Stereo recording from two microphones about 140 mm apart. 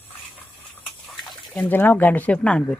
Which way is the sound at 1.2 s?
10° left (ahead or behind).